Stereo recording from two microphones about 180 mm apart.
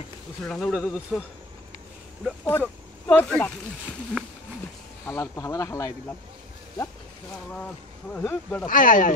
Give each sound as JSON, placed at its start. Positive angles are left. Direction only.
{"t": 0.4, "sound": "speech", "side_deg": 5}
{"t": 2.4, "sound": "speech", "side_deg": 10}
{"t": 5.0, "sound": "speech", "side_deg": 15}
{"t": 7.5, "sound": "speech", "side_deg": 5}
{"t": 8.6, "sound": "speech", "side_deg": 50}